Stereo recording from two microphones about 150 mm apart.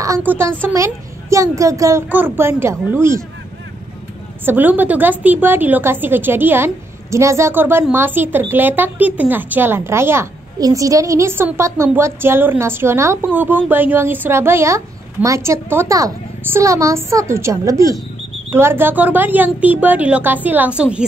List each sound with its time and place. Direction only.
0.0 s a woman's voice: 15° right (ahead or behind)
4.5 s a woman's voice: 10° right (ahead or behind)